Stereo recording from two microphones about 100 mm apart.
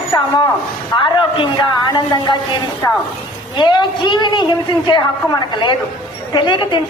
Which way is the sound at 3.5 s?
50° left (ahead or behind).